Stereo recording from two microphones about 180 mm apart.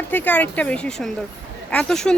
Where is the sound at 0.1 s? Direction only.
10° left (ahead or behind).